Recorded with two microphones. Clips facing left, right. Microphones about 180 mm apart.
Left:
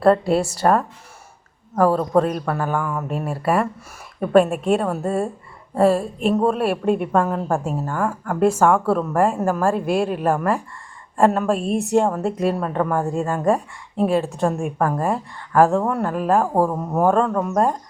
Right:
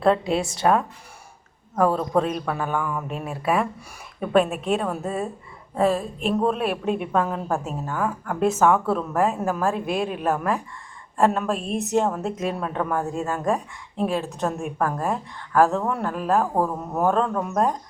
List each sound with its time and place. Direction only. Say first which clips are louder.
0.0 s a woman's voice: left 4 dB; 5° left (ahead or behind)
6.8 s a woman's voice: left 5 dB; 50° left (ahead or behind)
7.2 s a woman's voice: left 4 dB; centre (ahead or behind)
9.4 s a woman's voice: left 4 dB; 5° right (ahead or behind)
11.8 s a woman's voice: left 3 dB; 55° left (ahead or behind)
12.1 s a woman's voice: left 5 dB; centre (ahead or behind)